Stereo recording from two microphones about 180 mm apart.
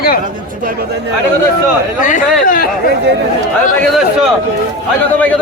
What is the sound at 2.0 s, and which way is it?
Speech, 50° left (ahead or behind).